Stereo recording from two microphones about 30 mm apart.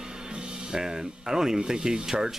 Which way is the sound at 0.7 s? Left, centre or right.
Right.